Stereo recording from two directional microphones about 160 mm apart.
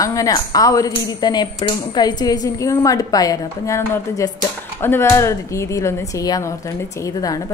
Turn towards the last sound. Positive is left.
turn(degrees=20)  # may be behind; listen again after turning